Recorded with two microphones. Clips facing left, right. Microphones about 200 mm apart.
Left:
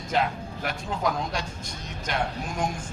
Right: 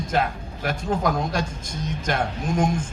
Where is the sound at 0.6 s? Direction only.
45° right (ahead or behind).